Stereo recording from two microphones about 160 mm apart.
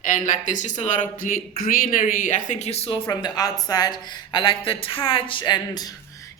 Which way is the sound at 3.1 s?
25° left (ahead or behind).